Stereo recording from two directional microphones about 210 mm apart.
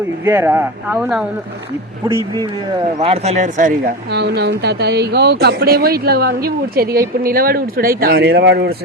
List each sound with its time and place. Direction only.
0.3 s speech: 10° right (ahead or behind); by 3.9 s 35° right (ahead or behind)
4.1 s speech: 50° right (ahead or behind)